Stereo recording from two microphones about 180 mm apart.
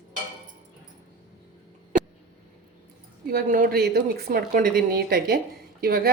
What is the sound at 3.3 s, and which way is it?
Speech, 55° right (ahead or behind).